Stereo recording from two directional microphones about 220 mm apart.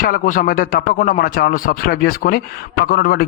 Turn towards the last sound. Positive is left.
turn(degrees=40)  # may be behind; listen again after turning